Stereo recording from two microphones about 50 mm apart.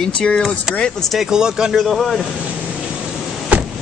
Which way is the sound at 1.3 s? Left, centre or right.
Centre.